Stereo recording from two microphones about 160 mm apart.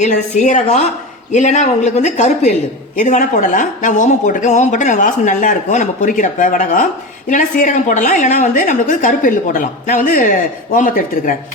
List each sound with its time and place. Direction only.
0.0 s a woman's voice: 50° left (ahead or behind)